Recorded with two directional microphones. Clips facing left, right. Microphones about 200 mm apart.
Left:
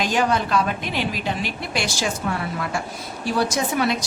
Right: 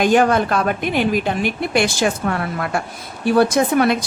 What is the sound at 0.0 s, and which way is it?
A woman's voice, 55° right (ahead or behind).